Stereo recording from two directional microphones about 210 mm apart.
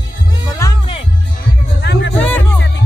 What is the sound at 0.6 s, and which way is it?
Music, 15° left (ahead or behind).